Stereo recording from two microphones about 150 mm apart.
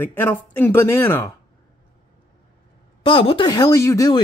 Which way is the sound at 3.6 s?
20° left (ahead or behind).